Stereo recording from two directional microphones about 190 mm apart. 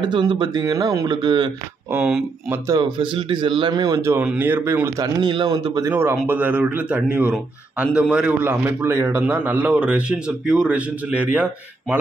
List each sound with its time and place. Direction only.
0.0 s speech: 25° right (ahead or behind)
1.9 s a man's voice: 5° right (ahead or behind)
2.7 s a man's voice: 25° right (ahead or behind); by 11.2 s 5° right (ahead or behind)